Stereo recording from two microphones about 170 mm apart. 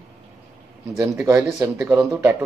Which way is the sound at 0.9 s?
15° right (ahead or behind).